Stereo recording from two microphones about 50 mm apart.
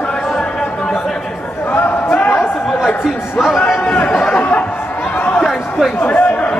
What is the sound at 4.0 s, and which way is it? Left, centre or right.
Speech, left.